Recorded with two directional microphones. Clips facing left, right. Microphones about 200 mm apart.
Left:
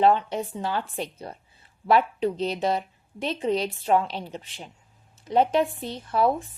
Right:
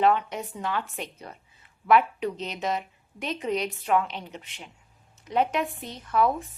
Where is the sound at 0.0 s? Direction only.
30° left (ahead or behind).